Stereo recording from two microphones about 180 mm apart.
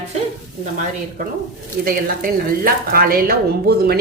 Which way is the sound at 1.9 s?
55° right (ahead or behind).